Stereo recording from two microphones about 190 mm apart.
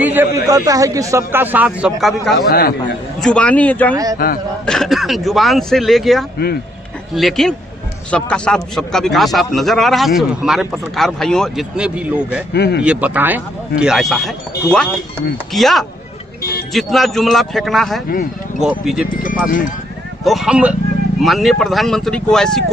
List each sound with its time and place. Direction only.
0.0 s a man's voice: 10° right (ahead or behind)
2.5 s a man's voice: 55° left (ahead or behind)
3.2 s a man's voice: 5° left (ahead or behind)
3.9 s a man's voice: 20° right (ahead or behind)
4.6 s a man's voice: centre (ahead or behind)
12.5 s a man's voice: 60° left (ahead or behind)
12.8 s a man's voice: 5° right (ahead or behind)
20.2 s a man's voice: centre (ahead or behind)